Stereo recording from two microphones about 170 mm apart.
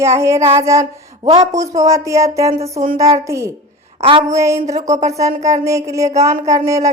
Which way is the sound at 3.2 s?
15° right (ahead or behind).